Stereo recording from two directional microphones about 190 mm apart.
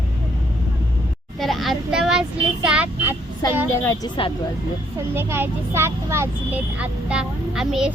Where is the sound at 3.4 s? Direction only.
20° left (ahead or behind).